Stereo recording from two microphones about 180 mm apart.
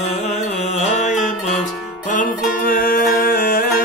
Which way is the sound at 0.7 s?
40° left (ahead or behind).